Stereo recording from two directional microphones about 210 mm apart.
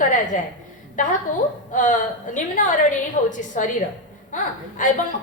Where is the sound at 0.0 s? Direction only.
35° left (ahead or behind).